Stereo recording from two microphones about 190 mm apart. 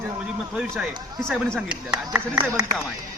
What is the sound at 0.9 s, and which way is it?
Speech, 20° right (ahead or behind).